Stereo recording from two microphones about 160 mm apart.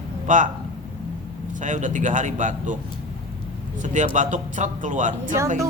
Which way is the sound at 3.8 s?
50° right (ahead or behind).